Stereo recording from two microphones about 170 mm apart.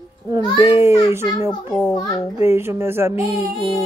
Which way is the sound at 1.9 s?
20° left (ahead or behind).